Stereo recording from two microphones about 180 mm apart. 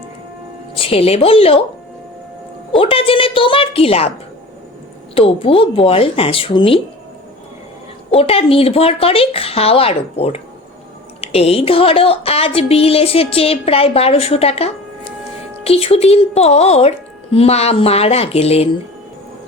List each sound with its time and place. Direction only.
0.8 s a woman's voice: 30° left (ahead or behind)
2.7 s a woman's voice: 30° left (ahead or behind)
5.1 s a woman's voice: 30° left (ahead or behind)
8.1 s a woman's voice: 35° left (ahead or behind)